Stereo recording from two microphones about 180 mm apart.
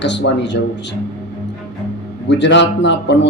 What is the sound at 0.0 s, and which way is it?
Speech, 75° left (ahead or behind).